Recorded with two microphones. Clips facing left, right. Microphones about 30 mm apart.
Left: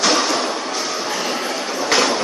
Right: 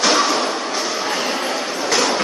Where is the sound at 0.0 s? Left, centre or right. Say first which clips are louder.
Right 1 dB; centre.